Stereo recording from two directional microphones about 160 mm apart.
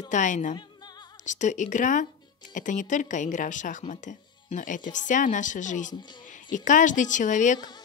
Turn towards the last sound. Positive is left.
turn(degrees=25)  # may be behind; listen again after turning